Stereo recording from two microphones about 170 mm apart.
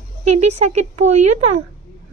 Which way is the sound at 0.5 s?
40° right (ahead or behind).